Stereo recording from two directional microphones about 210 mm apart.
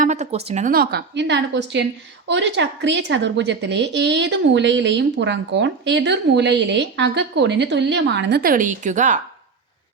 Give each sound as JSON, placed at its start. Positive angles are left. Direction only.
{"t": 0.0, "sound": "a woman's voice", "side_deg": -35}